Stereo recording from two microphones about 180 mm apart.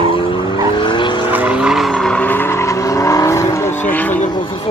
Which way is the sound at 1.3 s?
5° right (ahead or behind).